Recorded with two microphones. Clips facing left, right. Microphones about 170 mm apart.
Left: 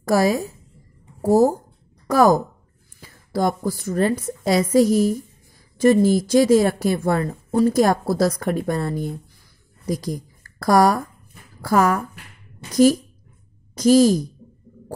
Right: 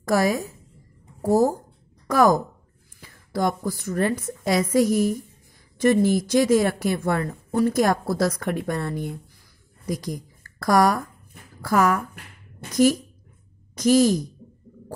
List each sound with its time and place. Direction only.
0.0 s a woman's voice: 30° left (ahead or behind)
13.7 s speech: 35° left (ahead or behind)